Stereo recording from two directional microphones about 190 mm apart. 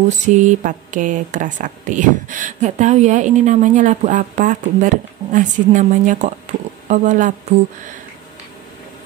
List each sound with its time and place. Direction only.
0.3 s speech: 40° right (ahead or behind)